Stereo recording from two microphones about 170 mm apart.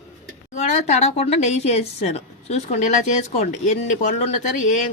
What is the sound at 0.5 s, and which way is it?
Speech, 45° left (ahead or behind).